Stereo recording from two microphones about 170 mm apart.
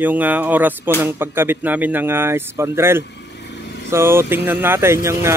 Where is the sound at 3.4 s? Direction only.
90° left.